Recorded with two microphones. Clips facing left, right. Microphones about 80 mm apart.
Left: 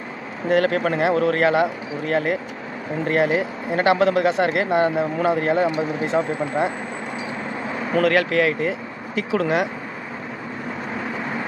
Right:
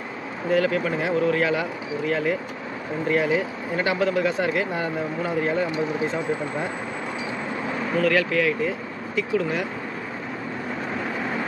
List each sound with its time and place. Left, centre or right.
0.5 s speech: left
8.0 s speech: left
9.3 s speech: left